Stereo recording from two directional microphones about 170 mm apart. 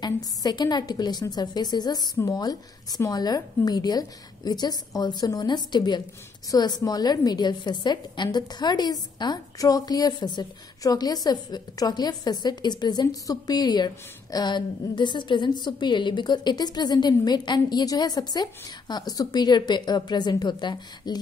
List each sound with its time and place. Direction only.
0.0 s a woman's voice: 25° left (ahead or behind)